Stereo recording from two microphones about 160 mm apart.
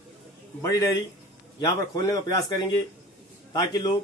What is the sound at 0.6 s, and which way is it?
A man's voice, 20° left (ahead or behind).